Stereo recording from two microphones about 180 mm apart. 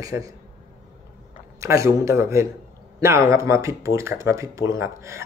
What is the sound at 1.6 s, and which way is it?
Speech, 15° right (ahead or behind).